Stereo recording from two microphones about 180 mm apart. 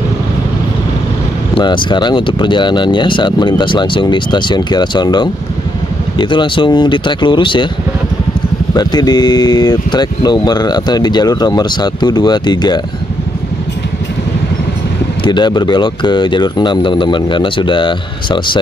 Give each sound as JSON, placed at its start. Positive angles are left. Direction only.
{"t": 1.6, "sound": "speech", "side_deg": 25}
{"t": 8.7, "sound": "speech", "side_deg": 25}
{"t": 15.2, "sound": "speech", "side_deg": 25}